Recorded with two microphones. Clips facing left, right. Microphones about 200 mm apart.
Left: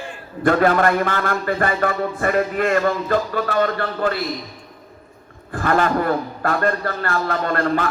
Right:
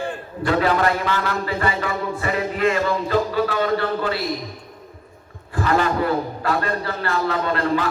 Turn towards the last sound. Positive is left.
turn(degrees=50)  # may be behind; listen again after turning